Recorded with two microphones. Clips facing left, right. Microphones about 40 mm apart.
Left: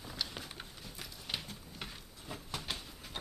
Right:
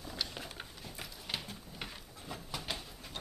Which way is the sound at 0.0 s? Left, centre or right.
Centre.